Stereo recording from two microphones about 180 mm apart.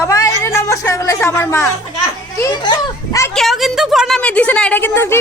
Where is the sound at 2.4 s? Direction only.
25° left (ahead or behind).